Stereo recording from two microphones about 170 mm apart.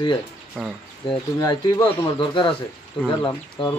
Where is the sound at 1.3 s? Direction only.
20° left (ahead or behind).